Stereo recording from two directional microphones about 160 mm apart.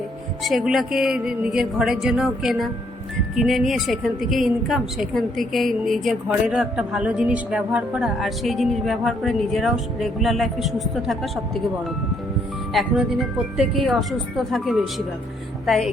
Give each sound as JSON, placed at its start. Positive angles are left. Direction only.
{"t": 0.4, "sound": "a woman's voice", "side_deg": 0}
{"t": 12.7, "sound": "a woman's voice", "side_deg": 0}